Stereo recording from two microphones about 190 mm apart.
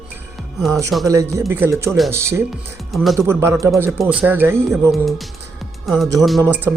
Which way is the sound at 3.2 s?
15° right (ahead or behind).